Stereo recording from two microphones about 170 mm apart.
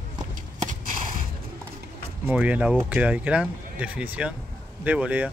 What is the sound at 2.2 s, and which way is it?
Speech, 10° right (ahead or behind).